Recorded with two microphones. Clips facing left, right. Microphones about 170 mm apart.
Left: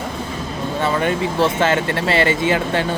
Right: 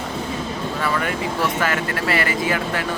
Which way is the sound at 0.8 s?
25° left (ahead or behind).